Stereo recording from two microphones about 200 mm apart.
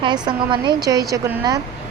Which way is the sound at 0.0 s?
25° right (ahead or behind).